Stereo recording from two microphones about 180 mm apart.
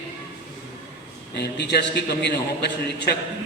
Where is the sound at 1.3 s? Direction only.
70° left (ahead or behind).